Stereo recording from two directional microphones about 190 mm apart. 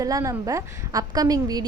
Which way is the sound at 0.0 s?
15° right (ahead or behind).